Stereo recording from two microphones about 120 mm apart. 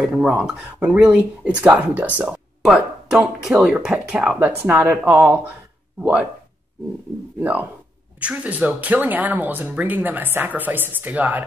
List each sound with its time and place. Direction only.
0.1 s speech: 5° right (ahead or behind)
4.4 s speech: 15° right (ahead or behind)
7.3 s speech: 15° right (ahead or behind)